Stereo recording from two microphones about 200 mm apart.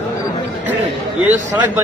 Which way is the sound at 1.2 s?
10° right (ahead or behind).